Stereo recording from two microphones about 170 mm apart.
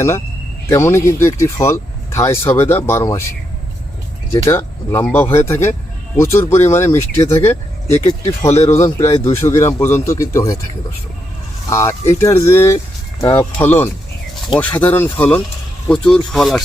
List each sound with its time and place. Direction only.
0.7 s speech: 15° left (ahead or behind)
4.3 s speech: 15° left (ahead or behind)
11.7 s speech: 15° left (ahead or behind)